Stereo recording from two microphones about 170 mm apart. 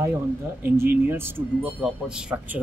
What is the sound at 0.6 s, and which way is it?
Speech, 15° right (ahead or behind).